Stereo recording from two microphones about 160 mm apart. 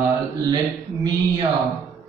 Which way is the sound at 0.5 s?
25° right (ahead or behind).